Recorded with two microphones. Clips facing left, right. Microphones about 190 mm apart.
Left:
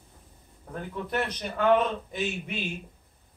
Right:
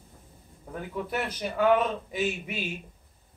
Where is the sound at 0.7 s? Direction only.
5° right (ahead or behind).